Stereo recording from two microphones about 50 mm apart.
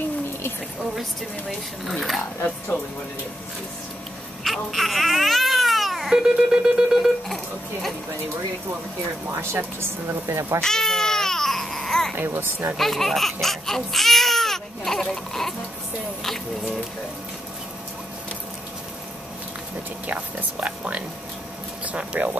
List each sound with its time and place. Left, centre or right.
1.9 s speech: centre
4.5 s speech: centre
9.3 s speech: right
10.2 s speech: right
10.6 s baby cry: centre
12.2 s speech: right
12.7 s speech: centre
20.1 s speech: right